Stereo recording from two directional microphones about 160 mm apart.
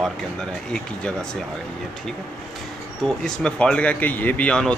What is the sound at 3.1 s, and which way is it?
Speech, 5° left (ahead or behind).